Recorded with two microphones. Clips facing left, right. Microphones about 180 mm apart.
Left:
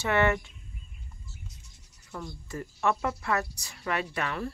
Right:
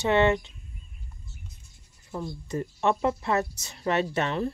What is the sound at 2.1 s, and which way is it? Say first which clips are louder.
A woman's voice: right 6 dB; 25° right (ahead or behind).